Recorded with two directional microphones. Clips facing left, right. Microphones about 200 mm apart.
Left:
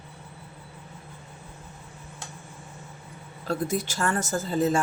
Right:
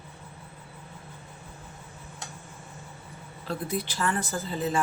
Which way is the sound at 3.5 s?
45° left (ahead or behind).